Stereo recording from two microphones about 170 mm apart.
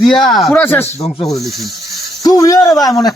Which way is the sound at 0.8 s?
35° left (ahead or behind).